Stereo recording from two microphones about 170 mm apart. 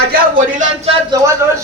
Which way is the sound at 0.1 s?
50° right (ahead or behind).